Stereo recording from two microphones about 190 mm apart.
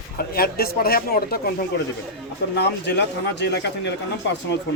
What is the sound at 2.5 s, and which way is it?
Speech, 65° left (ahead or behind).